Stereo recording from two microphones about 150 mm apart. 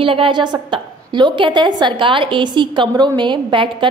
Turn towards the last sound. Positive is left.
turn(degrees=-35)  # may be behind; listen again after turning